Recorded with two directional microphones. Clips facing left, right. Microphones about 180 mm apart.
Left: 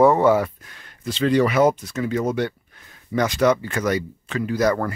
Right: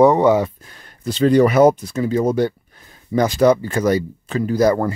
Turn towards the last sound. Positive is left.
turn(degrees=-30)  # may be behind; listen again after turning